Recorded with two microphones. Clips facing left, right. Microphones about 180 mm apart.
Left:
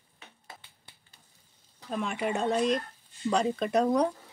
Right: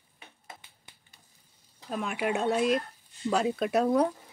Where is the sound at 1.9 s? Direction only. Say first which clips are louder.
Right 1 dB; 5° right (ahead or behind).